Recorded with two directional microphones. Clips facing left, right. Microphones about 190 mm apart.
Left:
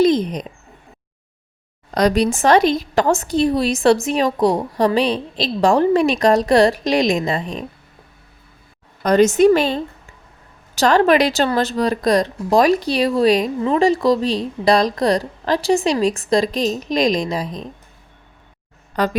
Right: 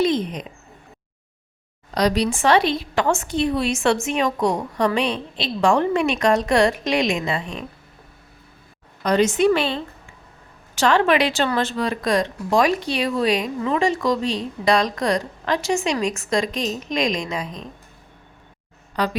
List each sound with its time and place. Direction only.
0.0 s speech: 40° left (ahead or behind)
2.0 s speech: 50° left (ahead or behind)
9.0 s a woman's voice: 45° left (ahead or behind)
19.0 s a woman's voice: 45° left (ahead or behind)